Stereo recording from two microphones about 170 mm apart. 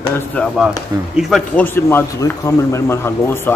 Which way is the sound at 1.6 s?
15° left (ahead or behind).